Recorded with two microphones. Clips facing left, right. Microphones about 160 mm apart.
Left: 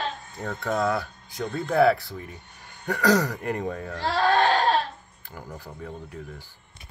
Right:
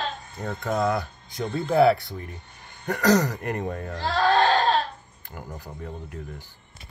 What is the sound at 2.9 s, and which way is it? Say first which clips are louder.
Speech: right 1 dB; 20° right (ahead or behind).